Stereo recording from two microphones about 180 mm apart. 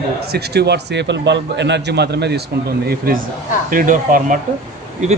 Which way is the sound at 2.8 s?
55° right (ahead or behind).